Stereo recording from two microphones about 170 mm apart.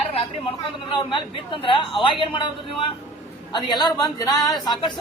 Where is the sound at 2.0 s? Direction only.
30° left (ahead or behind).